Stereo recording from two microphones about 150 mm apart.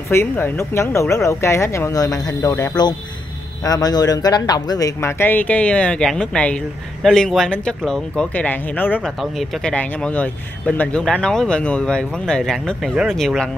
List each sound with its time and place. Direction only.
0.1 s speech: 15° left (ahead or behind)
9.2 s speech: centre (ahead or behind)